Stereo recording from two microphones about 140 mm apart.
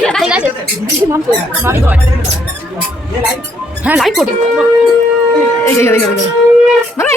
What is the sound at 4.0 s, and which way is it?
Speech, centre (ahead or behind).